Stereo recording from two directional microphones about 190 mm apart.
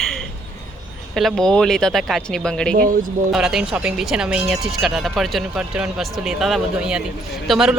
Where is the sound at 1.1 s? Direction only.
Centre (ahead or behind).